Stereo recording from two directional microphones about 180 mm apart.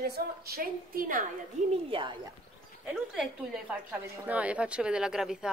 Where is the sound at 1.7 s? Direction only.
30° right (ahead or behind).